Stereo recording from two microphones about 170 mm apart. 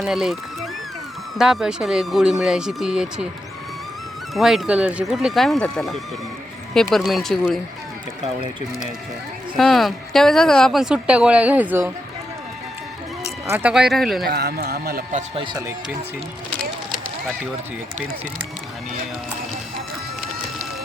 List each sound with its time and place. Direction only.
0.0 s speech: centre (ahead or behind)
4.4 s speech: centre (ahead or behind)
9.6 s speech: centre (ahead or behind)
13.2 s speech: 10° right (ahead or behind)
14.3 s speech: 70° right (ahead or behind)
15.4 s speech: 25° right (ahead or behind)